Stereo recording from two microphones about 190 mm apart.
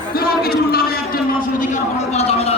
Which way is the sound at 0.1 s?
55° left (ahead or behind).